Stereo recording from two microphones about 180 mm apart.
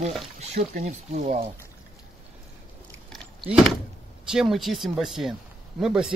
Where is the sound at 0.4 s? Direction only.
40° right (ahead or behind).